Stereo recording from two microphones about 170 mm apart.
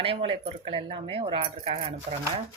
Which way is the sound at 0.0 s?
35° right (ahead or behind).